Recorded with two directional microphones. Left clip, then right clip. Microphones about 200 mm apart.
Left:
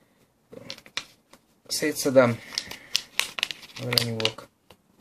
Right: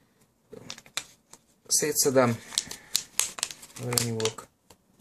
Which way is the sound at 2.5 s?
5° left (ahead or behind).